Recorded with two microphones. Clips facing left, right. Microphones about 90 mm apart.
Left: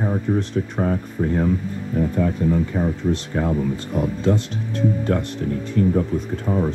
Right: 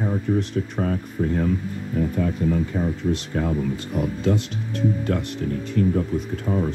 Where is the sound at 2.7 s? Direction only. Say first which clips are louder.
Left 2 dB; 35° left (ahead or behind).